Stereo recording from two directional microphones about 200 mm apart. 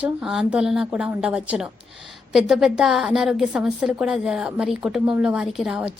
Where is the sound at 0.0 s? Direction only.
5° right (ahead or behind).